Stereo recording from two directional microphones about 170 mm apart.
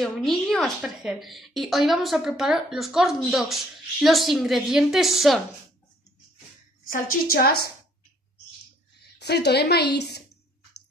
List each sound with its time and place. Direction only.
0.0 s a woman's voice: centre (ahead or behind)
6.9 s a woman's voice: 60° left (ahead or behind)
9.2 s a woman's voice: 75° left (ahead or behind)